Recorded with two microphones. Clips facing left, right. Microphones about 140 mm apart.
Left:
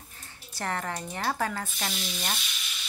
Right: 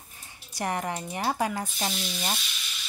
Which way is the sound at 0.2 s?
15° right (ahead or behind).